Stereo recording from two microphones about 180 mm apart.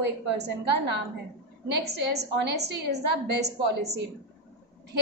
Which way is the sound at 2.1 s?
70° right (ahead or behind).